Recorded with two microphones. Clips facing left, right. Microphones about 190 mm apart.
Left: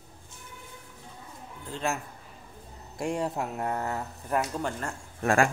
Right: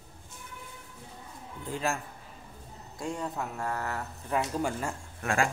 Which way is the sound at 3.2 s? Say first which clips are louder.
Left 4 dB; 25° left (ahead or behind).